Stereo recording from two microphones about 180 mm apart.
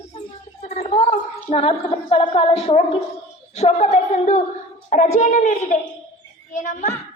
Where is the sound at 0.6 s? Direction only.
35° left (ahead or behind).